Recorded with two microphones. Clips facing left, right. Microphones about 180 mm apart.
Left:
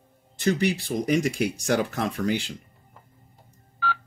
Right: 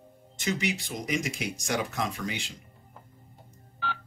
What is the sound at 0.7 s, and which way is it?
Speech, 35° left (ahead or behind).